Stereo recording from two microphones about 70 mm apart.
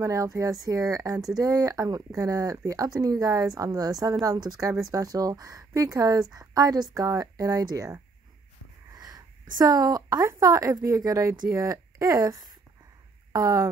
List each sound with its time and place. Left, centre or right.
0.0 s speech: right
8.9 s a sound: right
10.2 s speech: right
11.2 s speech: right